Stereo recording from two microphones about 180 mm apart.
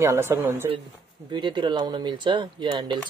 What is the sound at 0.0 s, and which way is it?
Speech, 15° right (ahead or behind).